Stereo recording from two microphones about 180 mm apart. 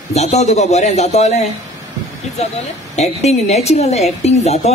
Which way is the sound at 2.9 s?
35° left (ahead or behind).